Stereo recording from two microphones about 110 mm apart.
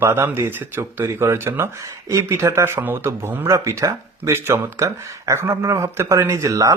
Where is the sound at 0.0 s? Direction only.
20° right (ahead or behind).